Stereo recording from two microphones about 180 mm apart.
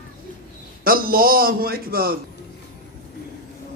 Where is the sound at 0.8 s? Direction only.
55° right (ahead or behind).